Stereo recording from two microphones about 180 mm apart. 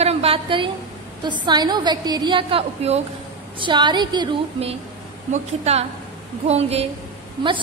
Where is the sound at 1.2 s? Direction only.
25° right (ahead or behind).